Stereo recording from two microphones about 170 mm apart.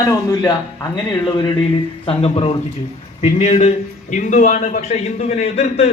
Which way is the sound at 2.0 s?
35° left (ahead or behind).